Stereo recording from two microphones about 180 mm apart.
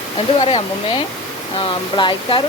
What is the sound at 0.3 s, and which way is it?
Speech, 35° left (ahead or behind).